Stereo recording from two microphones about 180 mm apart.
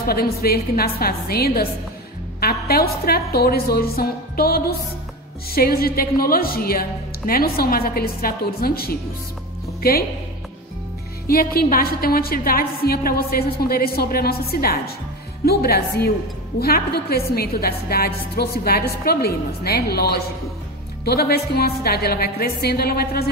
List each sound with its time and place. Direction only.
0.0 s a woman's voice: 55° left (ahead or behind)
11.2 s a woman's voice: 55° left (ahead or behind)